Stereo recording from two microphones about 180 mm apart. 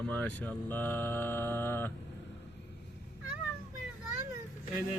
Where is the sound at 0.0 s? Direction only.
10° left (ahead or behind).